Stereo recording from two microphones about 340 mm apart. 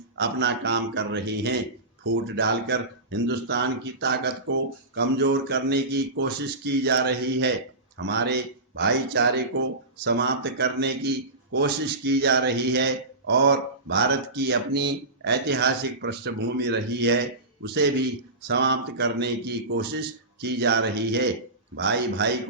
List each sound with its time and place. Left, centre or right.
0.2 s speech: right
18.4 s speech: right